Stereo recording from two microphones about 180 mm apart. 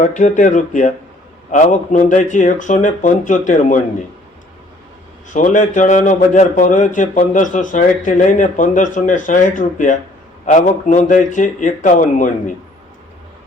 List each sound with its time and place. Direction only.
0.0 s a man's voice: 45° left (ahead or behind)
5.3 s a man's voice: 45° left (ahead or behind)